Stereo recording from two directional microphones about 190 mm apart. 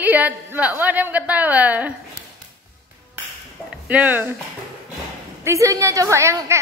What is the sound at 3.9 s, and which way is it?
Speech, 10° right (ahead or behind).